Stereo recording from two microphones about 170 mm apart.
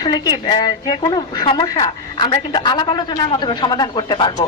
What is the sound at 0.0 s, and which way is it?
A woman's voice, 25° left (ahead or behind).